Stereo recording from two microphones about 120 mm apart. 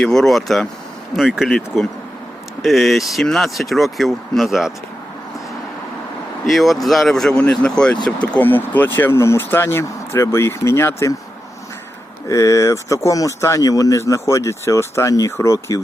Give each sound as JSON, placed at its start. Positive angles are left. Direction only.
{"t": 0.0, "sound": "speech", "side_deg": 5}
{"t": 6.4, "sound": "speech", "side_deg": 0}
{"t": 12.3, "sound": "speech", "side_deg": 25}